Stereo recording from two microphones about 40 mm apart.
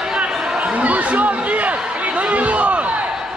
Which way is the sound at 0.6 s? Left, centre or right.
Right.